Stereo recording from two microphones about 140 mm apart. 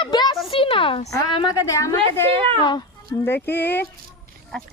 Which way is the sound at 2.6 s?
35° left (ahead or behind).